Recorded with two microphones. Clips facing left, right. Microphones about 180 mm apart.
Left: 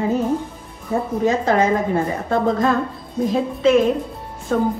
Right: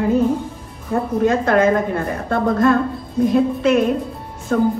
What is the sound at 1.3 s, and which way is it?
A woman's voice, 55° right (ahead or behind).